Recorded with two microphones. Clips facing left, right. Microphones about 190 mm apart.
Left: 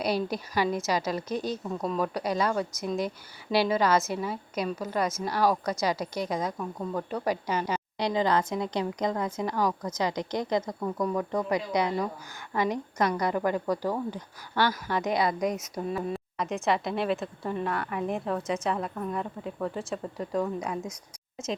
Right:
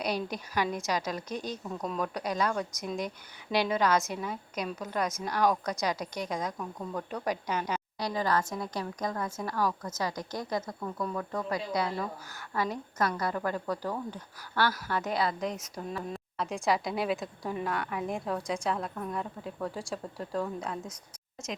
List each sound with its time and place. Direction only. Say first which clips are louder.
0.0 s a woman's voice: left 4 dB; 5° left (ahead or behind)
7.9 s a woman's voice: left 4 dB; 25° left (ahead or behind); by 20.7 s 5° left (ahead or behind)